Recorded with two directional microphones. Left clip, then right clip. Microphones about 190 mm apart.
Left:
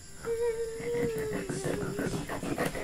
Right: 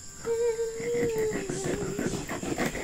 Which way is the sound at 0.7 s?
15° right (ahead or behind).